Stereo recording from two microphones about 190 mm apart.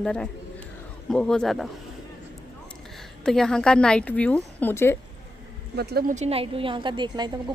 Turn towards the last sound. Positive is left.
turn(degrees=-25)  # may be behind; listen again after turning